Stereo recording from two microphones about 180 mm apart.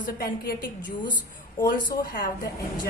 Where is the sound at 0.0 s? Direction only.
55° left (ahead or behind).